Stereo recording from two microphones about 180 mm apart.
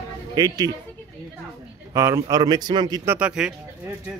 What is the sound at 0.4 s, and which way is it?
Speech, 20° right (ahead or behind).